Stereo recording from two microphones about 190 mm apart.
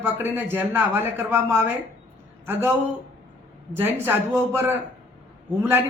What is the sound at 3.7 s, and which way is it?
A man's voice, 10° right (ahead or behind).